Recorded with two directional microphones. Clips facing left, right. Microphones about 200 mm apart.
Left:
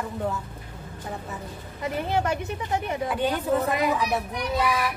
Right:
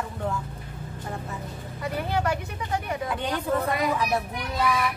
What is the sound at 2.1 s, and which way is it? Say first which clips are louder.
Speech: left 2 dB; 25° left (ahead or behind).